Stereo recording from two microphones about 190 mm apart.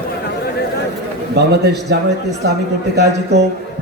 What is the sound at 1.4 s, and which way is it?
A man's voice, 60° right (ahead or behind).